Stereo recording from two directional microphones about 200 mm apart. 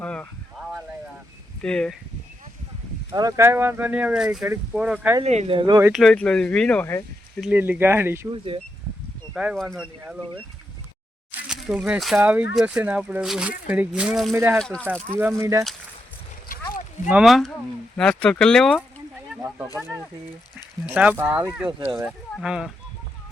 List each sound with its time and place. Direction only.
0.0 s a sound: 5° left (ahead or behind)
1.6 s speech: 5° left (ahead or behind)
3.1 s speech: 20° right (ahead or behind)
5.2 s speech: 35° right (ahead or behind)
5.9 s speech: centre (ahead or behind)
7.4 s speech: 10° right (ahead or behind)
8.3 s speech: 25° right (ahead or behind)
9.3 s speech: 5° right (ahead or behind)
11.3 s speech: centre (ahead or behind)
14.3 s speech: 10° right (ahead or behind)
14.6 s speech: 5° left (ahead or behind)
15.1 s speech: 10° right (ahead or behind)
17.1 s speech: centre (ahead or behind)
19.4 s speech: 15° right (ahead or behind)